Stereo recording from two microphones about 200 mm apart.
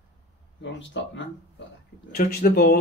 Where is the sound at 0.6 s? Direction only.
65° left (ahead or behind).